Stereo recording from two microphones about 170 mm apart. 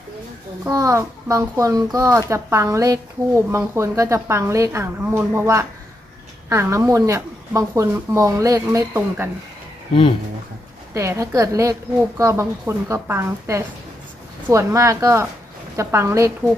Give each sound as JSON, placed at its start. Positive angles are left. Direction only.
{"t": 0.7, "sound": "a child's voice", "side_deg": -20}
{"t": 10.9, "sound": "a child's voice", "side_deg": -15}